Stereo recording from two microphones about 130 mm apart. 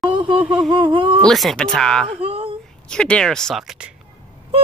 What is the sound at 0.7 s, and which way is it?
Speech, 40° right (ahead or behind).